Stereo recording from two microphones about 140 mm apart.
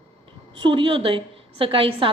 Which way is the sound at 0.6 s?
35° right (ahead or behind).